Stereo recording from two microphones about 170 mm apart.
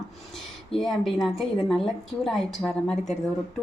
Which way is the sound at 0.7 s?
Centre (ahead or behind).